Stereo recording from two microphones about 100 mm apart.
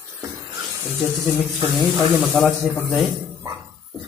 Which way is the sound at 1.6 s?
25° right (ahead or behind).